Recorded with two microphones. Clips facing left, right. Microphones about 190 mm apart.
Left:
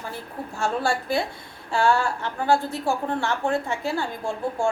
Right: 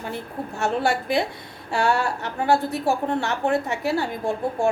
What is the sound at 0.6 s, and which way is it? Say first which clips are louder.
Speech: right 2 dB; 20° right (ahead or behind).